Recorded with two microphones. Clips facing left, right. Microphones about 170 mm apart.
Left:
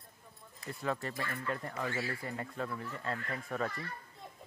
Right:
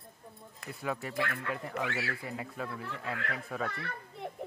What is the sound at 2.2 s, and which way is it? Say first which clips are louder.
Speech: even; 5° right (ahead or behind).